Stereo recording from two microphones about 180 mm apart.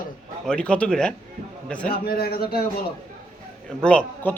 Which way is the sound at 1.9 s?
55° left (ahead or behind).